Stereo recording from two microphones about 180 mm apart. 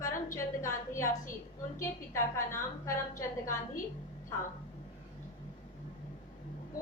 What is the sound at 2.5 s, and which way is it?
Speech, 15° left (ahead or behind).